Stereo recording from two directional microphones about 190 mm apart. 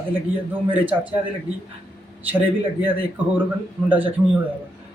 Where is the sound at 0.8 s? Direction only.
10° right (ahead or behind).